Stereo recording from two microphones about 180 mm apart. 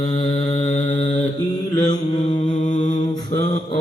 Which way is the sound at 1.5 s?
25° left (ahead or behind).